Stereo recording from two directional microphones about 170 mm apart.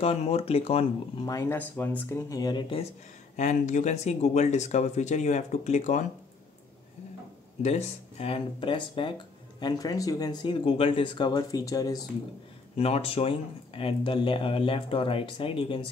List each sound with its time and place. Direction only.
0.0 s speech: 35° left (ahead or behind)
1.2 s speech: 20° left (ahead or behind)
3.3 s speech: 45° left (ahead or behind)
7.6 s speech: 40° left (ahead or behind); by 12.0 s 20° left (ahead or behind)
12.7 s speech: 35° left (ahead or behind)